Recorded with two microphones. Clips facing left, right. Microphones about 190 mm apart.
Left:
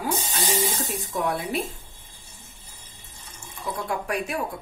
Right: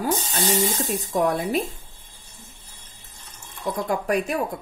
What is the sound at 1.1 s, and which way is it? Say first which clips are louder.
Speech: right 5 dB; 40° right (ahead or behind).